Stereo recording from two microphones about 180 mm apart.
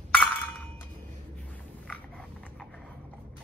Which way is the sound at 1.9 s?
5° left (ahead or behind).